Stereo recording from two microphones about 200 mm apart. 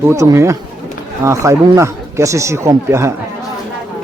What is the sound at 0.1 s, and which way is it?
A man's voice, 15° right (ahead or behind).